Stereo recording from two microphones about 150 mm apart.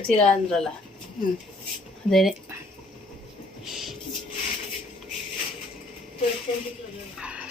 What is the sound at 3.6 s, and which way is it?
Music, centre (ahead or behind).